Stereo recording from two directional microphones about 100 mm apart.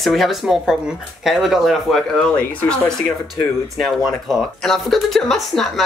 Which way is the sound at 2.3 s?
10° left (ahead or behind).